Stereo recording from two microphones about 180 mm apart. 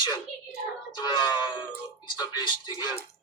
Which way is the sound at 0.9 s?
25° left (ahead or behind).